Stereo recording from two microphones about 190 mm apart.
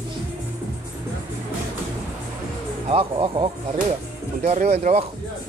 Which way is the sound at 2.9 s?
30° right (ahead or behind).